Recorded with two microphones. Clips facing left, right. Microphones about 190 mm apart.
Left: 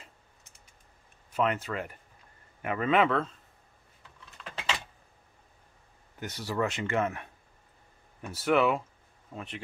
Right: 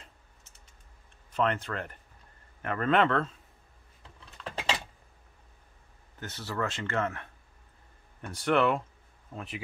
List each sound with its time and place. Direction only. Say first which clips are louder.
1.3 s speech: even; 5° left (ahead or behind)
4.5 s a sound: right 3 dB; 30° right (ahead or behind)
6.1 s speech: left 3 dB; 15° left (ahead or behind)
8.2 s speech: left 1 dB; 5° left (ahead or behind)